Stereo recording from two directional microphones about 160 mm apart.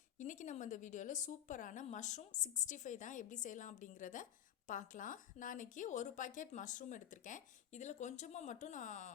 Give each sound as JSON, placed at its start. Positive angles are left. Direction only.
{"t": 0.2, "sound": "speech", "side_deg": 50}